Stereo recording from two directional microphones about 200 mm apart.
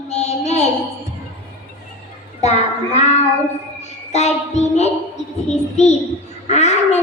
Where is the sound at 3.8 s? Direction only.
35° left (ahead or behind).